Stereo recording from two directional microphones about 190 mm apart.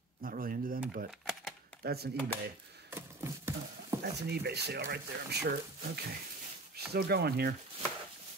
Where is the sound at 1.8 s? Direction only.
55° right (ahead or behind).